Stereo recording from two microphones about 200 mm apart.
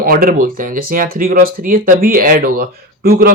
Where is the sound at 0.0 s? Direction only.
45° right (ahead or behind).